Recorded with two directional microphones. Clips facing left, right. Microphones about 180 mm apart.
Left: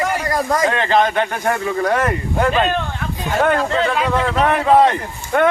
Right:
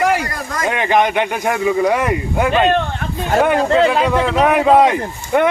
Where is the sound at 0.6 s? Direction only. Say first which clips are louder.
Right 4 dB; 15° right (ahead or behind).